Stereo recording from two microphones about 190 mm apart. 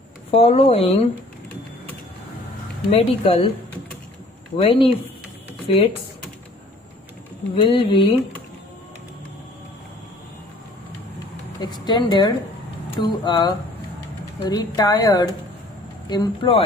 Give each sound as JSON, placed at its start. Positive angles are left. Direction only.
{"t": 0.3, "sound": "speech", "side_deg": 30}
{"t": 2.9, "sound": "speech", "side_deg": 30}
{"t": 4.6, "sound": "a woman's voice", "side_deg": 30}
{"t": 7.6, "sound": "a woman's voice", "side_deg": 25}
{"t": 11.6, "sound": "a woman's voice", "side_deg": 20}